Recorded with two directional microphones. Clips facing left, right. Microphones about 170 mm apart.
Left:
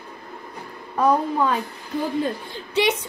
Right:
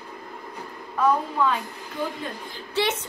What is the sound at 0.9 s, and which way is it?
Speech, 40° left (ahead or behind).